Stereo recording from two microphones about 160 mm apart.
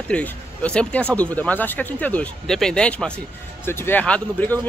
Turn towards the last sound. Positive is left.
turn(degrees=10)  # may be behind; listen again after turning